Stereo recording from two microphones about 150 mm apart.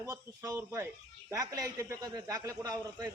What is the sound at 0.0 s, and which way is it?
Speech, 25° right (ahead or behind).